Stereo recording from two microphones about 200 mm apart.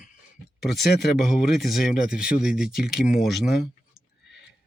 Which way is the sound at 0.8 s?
55° left (ahead or behind).